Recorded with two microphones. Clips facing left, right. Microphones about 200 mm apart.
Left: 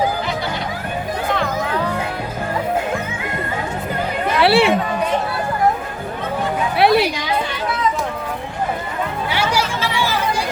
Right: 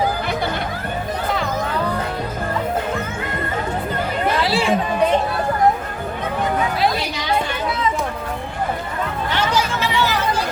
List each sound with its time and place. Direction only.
4.4 s chatter: 65° left (ahead or behind)
6.7 s a sound: 65° left (ahead or behind)
9.3 s chatter: 10° left (ahead or behind)